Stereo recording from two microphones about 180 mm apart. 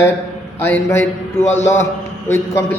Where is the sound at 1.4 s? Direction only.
40° left (ahead or behind).